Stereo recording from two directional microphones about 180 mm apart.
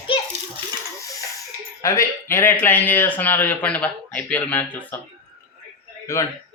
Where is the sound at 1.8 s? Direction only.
15° left (ahead or behind).